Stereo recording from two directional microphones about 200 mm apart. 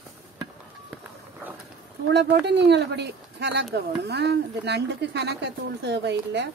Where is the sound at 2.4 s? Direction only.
60° right (ahead or behind).